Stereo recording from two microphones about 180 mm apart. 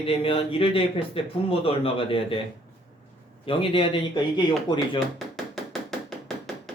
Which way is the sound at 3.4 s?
30° left (ahead or behind).